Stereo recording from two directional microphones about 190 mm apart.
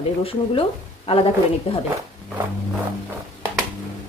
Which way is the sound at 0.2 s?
30° left (ahead or behind).